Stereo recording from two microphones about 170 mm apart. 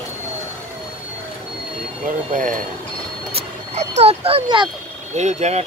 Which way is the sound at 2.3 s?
50° right (ahead or behind).